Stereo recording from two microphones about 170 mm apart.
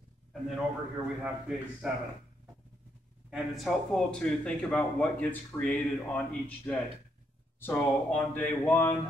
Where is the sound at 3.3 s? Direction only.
Centre (ahead or behind).